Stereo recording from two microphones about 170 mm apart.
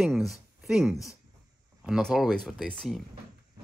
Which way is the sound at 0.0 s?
Centre (ahead or behind).